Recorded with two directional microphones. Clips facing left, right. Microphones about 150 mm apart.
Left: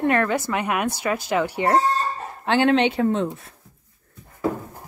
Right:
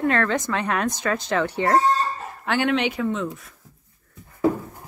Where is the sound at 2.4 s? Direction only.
25° left (ahead or behind).